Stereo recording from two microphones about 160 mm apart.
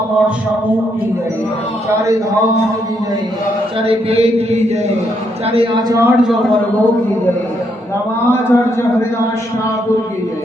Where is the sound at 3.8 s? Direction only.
35° right (ahead or behind).